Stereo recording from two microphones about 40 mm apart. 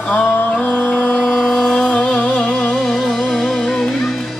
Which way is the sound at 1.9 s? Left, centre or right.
Left.